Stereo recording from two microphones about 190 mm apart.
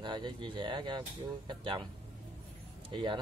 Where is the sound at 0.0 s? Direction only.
25° right (ahead or behind).